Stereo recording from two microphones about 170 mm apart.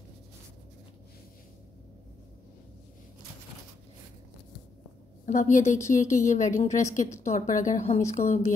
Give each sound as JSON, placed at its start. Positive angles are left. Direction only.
{"t": 5.2, "sound": "a woman's voice", "side_deg": 50}